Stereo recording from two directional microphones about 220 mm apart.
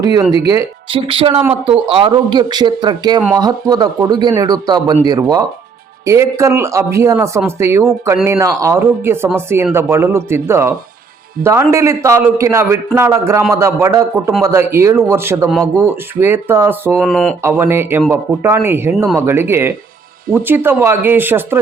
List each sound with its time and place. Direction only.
0.0 s speech: 15° right (ahead or behind)
1.0 s speech: 25° right (ahead or behind); by 17.0 s 10° right (ahead or behind)
17.0 s speech: centre (ahead or behind)
17.4 s speech: 10° right (ahead or behind)